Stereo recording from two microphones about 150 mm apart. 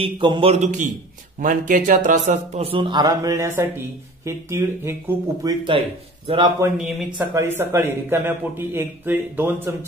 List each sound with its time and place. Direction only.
0.0 s a man's voice: 35° right (ahead or behind)
0.6 s a man's voice: 55° right (ahead or behind); by 6.5 s 35° right (ahead or behind)
7.4 s a man's voice: 15° right (ahead or behind)